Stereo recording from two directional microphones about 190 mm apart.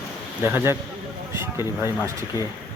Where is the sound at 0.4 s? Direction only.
10° right (ahead or behind).